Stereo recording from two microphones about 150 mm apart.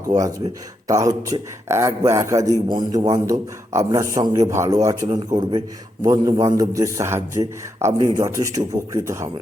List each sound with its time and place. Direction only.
0.2 s a man's voice: 25° right (ahead or behind)